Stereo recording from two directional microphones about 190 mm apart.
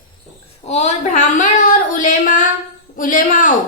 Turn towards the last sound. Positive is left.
turn(degrees=45)  # may be behind; listen again after turning